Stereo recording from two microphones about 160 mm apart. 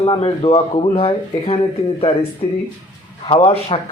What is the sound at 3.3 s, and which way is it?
Speech, 35° left (ahead or behind).